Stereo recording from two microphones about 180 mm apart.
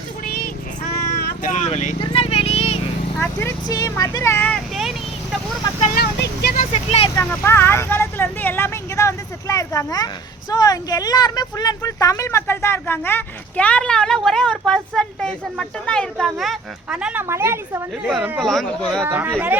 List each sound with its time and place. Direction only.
0.3 s a sound: 55° left (ahead or behind)
1.2 s vehicle: 45° left (ahead or behind)
3.2 s speech: 15° left (ahead or behind); by 5.4 s centre (ahead or behind)
5.8 s speech: 50° left (ahead or behind)
6.6 s speech: 35° left (ahead or behind)
7.2 s speech: 15° left (ahead or behind); by 17.8 s 15° right (ahead or behind)
18.1 s speech: 5° right (ahead or behind)
19.0 s speech: 10° right (ahead or behind)